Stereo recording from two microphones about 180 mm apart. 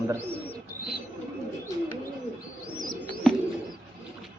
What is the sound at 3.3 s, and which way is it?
Bird, centre (ahead or behind).